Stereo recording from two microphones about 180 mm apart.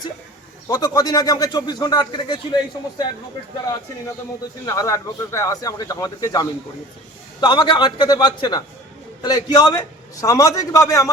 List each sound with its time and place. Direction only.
0.7 s a man's voice: 20° left (ahead or behind)
4.6 s a man's voice: 20° left (ahead or behind)